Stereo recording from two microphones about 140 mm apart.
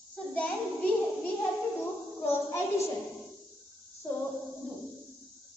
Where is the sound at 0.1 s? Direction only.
10° left (ahead or behind).